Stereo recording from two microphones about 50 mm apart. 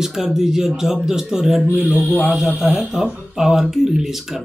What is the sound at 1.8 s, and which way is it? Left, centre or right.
Mantra, left.